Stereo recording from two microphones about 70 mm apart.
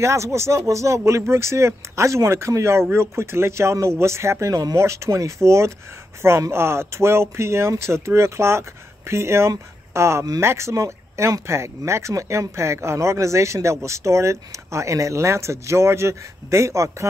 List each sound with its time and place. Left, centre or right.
0.0 s speech: right